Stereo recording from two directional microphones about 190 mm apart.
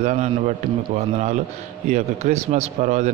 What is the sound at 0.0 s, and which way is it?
Speech, 40° right (ahead or behind).